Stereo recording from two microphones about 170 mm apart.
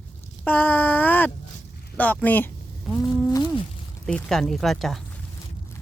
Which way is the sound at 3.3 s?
20° left (ahead or behind).